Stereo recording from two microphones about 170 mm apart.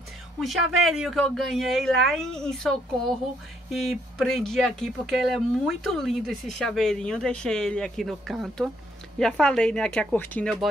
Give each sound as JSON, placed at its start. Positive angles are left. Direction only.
{"t": 0.4, "sound": "speech", "side_deg": 0}